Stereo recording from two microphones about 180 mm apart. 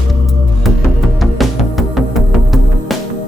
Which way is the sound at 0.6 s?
Centre (ahead or behind).